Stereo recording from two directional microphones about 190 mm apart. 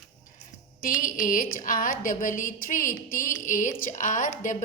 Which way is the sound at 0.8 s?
45° left (ahead or behind).